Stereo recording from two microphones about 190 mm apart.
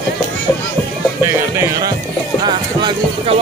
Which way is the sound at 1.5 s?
15° right (ahead or behind).